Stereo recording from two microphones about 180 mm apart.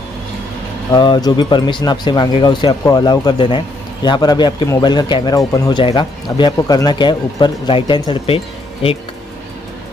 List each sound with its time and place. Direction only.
0.9 s speech: 25° left (ahead or behind)